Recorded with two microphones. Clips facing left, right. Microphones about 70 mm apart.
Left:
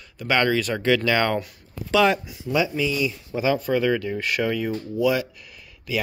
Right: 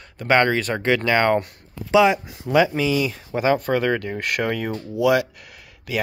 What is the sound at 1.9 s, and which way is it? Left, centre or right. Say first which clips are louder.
Speech: right 3 dB; centre.